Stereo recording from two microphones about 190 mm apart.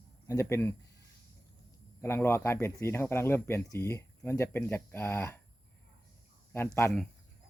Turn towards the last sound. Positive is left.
turn(degrees=10)  # may be behind; listen again after turning